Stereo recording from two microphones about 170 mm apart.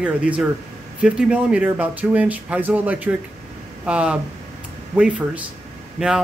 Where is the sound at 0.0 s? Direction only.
5° right (ahead or behind).